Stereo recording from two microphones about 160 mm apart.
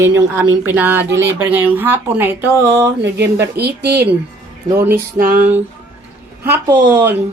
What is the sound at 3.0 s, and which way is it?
Speech, 90° right.